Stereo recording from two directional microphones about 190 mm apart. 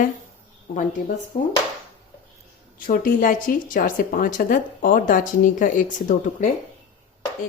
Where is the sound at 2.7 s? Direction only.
45° left (ahead or behind).